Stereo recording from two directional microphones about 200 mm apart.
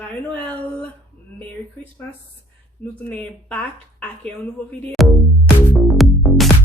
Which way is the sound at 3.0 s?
5° left (ahead or behind).